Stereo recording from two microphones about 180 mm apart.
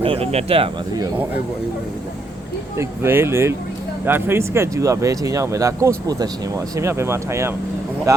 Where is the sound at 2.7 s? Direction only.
15° right (ahead or behind).